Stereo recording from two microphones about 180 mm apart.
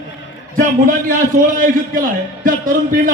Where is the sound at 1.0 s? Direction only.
50° right (ahead or behind).